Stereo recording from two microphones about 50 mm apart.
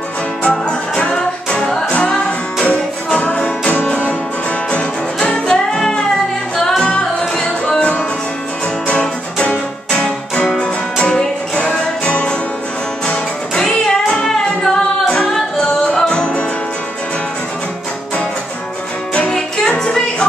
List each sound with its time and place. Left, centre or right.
0.4 s music: centre
5.3 s music: centre
8.8 s music: left
19.3 s music: centre